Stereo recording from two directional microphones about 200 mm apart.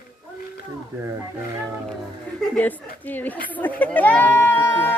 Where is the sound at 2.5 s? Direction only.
10° left (ahead or behind).